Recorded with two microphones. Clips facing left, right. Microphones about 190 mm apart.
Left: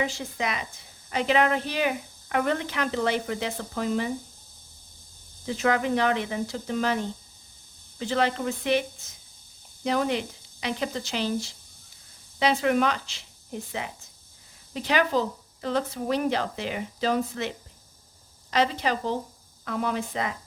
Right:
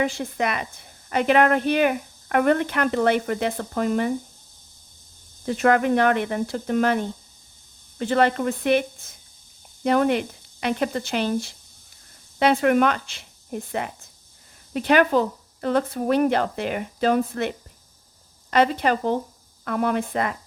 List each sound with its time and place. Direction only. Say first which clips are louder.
0.0 s a woman's voice: right 5 dB; 55° right (ahead or behind)
5.5 s a woman's voice: right 5 dB; 55° right (ahead or behind)
18.5 s a woman's voice: right 5 dB; 55° right (ahead or behind)